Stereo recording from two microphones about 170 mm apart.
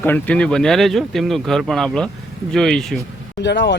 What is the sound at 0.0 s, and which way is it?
Speech, 10° left (ahead or behind).